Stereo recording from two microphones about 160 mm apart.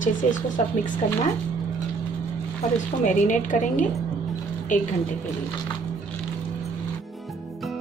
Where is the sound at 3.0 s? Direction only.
55° left (ahead or behind).